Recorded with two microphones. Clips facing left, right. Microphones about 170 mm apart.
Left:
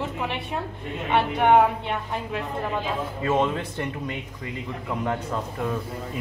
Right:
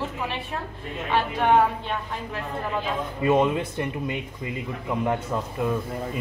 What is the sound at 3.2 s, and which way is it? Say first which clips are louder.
Speech: right 3 dB; 15° right (ahead or behind).